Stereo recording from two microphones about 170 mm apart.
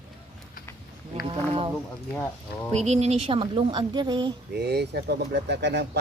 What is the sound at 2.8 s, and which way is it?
A woman's voice, 40° right (ahead or behind).